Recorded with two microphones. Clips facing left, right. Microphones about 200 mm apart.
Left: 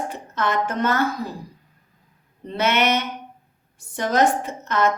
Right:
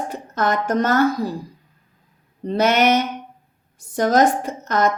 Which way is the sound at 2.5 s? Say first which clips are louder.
Right 4 dB; 40° right (ahead or behind).